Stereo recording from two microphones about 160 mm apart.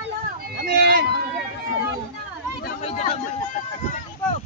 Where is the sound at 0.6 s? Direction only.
80° right.